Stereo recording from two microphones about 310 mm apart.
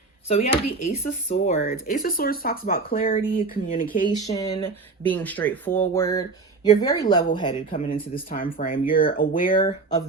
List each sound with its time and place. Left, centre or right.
0.3 s speech: centre
4.2 s speech: centre
5.0 s speech: centre; by 9.6 s left
9.6 s speech: centre